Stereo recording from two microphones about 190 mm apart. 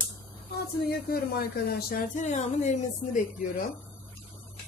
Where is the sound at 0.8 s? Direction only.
55° left (ahead or behind).